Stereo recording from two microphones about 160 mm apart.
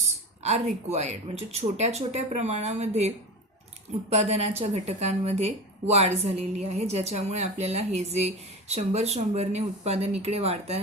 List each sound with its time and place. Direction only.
0.9 s speech: 40° right (ahead or behind)
4.1 s a woman's voice: 45° right (ahead or behind)